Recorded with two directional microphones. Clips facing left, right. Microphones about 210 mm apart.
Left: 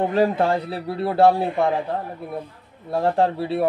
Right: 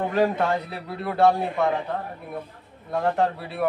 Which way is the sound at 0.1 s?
30° left (ahead or behind).